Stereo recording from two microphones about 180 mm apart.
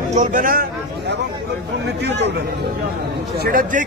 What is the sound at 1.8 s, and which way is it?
Speech, 75° right (ahead or behind).